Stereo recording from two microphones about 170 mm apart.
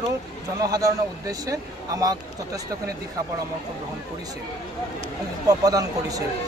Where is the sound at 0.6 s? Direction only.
20° right (ahead or behind).